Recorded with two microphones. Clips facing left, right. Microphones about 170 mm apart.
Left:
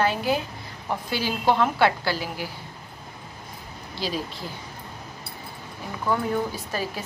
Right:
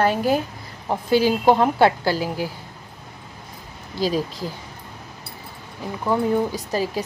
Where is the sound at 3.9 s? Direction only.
45° right (ahead or behind).